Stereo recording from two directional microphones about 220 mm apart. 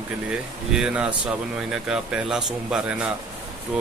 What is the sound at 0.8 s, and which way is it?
Speech, 5° right (ahead or behind).